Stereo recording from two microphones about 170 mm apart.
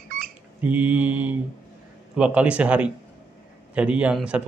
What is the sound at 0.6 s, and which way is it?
A man's voice, 10° right (ahead or behind).